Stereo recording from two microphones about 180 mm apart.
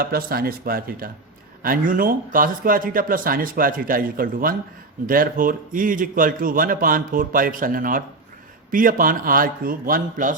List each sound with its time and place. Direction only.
0.0 s a man's voice: 55° right (ahead or behind)